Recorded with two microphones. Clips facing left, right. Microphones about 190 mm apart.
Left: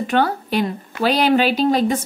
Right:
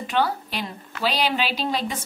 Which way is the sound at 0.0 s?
50° left (ahead or behind).